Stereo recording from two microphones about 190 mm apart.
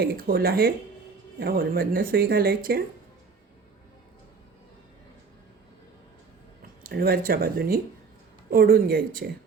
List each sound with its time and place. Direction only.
0.0 s speech: 55° right (ahead or behind)
6.8 s speech: 50° right (ahead or behind)